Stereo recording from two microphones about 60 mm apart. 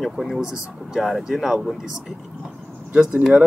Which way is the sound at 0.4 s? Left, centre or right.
Centre.